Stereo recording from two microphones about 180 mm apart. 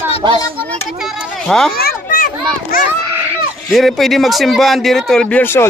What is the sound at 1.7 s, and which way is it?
Children playing, 55° left (ahead or behind).